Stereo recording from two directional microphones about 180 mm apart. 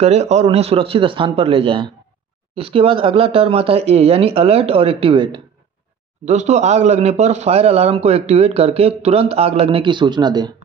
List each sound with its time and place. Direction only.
0.0 s a man's voice: 40° right (ahead or behind)
6.2 s a man's voice: 40° right (ahead or behind); by 10.5 s 25° right (ahead or behind)